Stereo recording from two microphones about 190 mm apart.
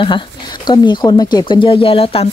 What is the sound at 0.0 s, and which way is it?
Speech, 25° left (ahead or behind).